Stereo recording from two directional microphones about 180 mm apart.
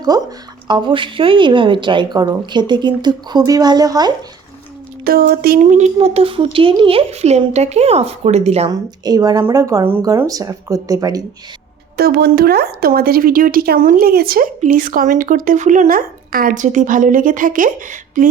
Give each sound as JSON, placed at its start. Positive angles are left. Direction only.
{"t": 0.0, "sound": "a woman's voice", "side_deg": -20}
{"t": 5.0, "sound": "speech", "side_deg": -55}
{"t": 5.7, "sound": "speech", "side_deg": -35}
{"t": 8.7, "sound": "a woman's voice", "side_deg": -20}
{"t": 11.9, "sound": "a woman's voice", "side_deg": -60}